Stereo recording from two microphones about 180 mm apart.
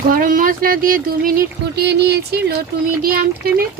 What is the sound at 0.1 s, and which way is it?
Speech, 50° right (ahead or behind).